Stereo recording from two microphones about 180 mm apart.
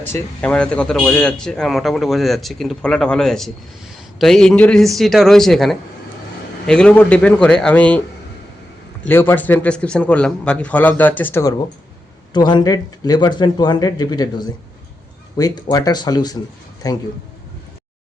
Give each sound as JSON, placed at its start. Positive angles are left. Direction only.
{"t": 0.1, "sound": "speech", "side_deg": 5}
{"t": 9.0, "sound": "a man's voice", "side_deg": 10}
{"t": 12.3, "sound": "speech", "side_deg": 25}